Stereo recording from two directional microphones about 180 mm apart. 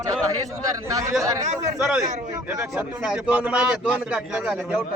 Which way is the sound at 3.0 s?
5° right (ahead or behind).